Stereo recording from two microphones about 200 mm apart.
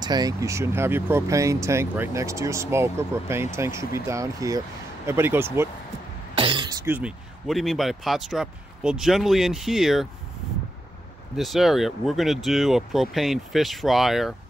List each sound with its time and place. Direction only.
0.0 s speech: 20° right (ahead or behind)
6.3 s throat clearing: 25° right (ahead or behind)
7.0 s speech: 5° right (ahead or behind)
11.3 s speech: centre (ahead or behind)